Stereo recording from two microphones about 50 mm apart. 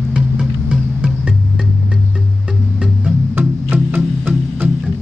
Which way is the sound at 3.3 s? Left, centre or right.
Right.